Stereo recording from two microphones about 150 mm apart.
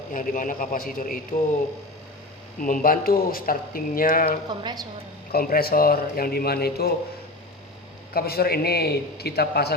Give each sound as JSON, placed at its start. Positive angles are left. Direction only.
{"t": 0.1, "sound": "a man's voice", "side_deg": 65}
{"t": 2.6, "sound": "speech", "side_deg": 65}
{"t": 4.4, "sound": "a woman's voice", "side_deg": -30}
{"t": 5.3, "sound": "a man's voice", "side_deg": 85}
{"t": 8.1, "sound": "a man's voice", "side_deg": 90}